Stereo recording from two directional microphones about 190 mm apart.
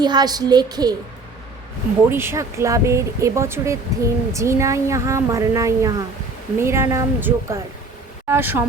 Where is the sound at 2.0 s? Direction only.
10° right (ahead or behind).